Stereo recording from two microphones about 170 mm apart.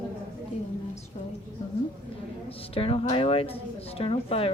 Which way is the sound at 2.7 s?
35° left (ahead or behind).